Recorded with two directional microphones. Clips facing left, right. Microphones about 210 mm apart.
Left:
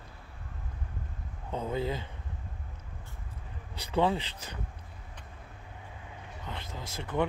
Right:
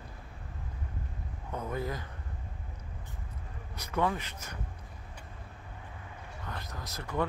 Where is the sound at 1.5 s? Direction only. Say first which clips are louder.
Left 3 dB; 25° left (ahead or behind).